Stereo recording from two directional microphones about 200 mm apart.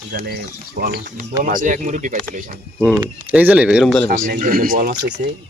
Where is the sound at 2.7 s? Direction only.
5° right (ahead or behind).